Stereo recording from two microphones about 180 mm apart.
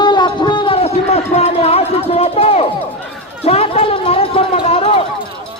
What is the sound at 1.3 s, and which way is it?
Speech, 35° left (ahead or behind).